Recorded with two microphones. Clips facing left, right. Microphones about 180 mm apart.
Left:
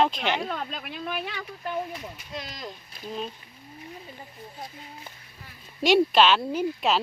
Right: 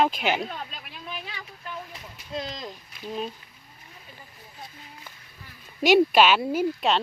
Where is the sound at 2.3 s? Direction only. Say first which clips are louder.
Right 5 dB; 25° right (ahead or behind).